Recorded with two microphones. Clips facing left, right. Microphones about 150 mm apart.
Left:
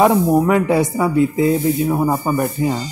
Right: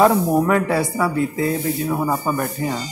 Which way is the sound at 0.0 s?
20° left (ahead or behind).